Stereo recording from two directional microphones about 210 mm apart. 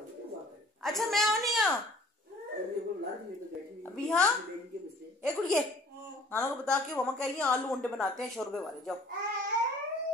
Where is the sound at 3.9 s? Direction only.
5° left (ahead or behind).